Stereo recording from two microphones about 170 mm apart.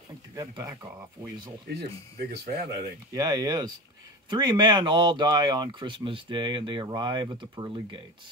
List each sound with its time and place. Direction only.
0.4 s speech: 20° right (ahead or behind)
1.7 s speech: 75° right (ahead or behind)
3.1 s speech: 25° right (ahead or behind)